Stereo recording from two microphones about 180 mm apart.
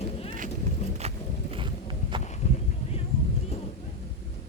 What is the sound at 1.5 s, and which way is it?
Walk, 25° right (ahead or behind).